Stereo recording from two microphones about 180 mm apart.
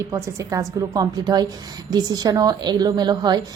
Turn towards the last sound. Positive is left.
turn(degrees=-20)  # may be behind; listen again after turning